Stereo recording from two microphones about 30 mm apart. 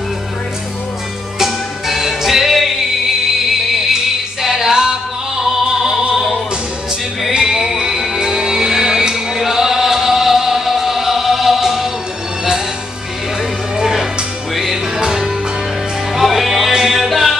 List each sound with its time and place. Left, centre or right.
1.4 s music: centre
5.4 s opera: centre
7.4 s music: centre
7.7 s music: right
13.7 s music: centre
15.0 s music: centre
16.2 s music: centre